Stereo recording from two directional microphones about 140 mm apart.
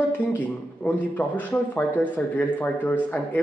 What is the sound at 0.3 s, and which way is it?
Speech, 10° left (ahead or behind).